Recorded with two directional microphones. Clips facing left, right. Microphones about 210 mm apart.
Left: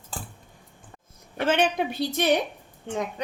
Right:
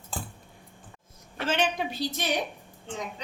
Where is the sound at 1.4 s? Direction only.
60° left (ahead or behind).